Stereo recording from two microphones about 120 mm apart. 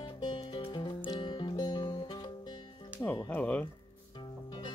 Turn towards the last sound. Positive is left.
turn(degrees=10)  # may be behind; listen again after turning